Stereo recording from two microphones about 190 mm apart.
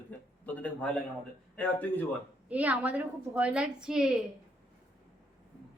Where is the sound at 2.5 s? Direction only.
5° right (ahead or behind).